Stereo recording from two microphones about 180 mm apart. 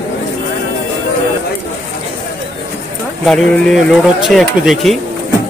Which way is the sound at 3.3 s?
Centre (ahead or behind).